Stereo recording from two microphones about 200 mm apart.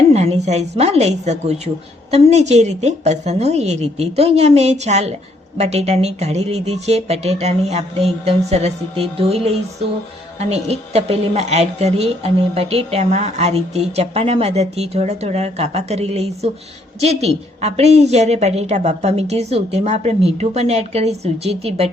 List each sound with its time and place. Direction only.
0.1 s a woman's voice: 30° right (ahead or behind)